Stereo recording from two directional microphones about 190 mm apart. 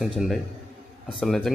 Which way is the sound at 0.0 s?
5° right (ahead or behind).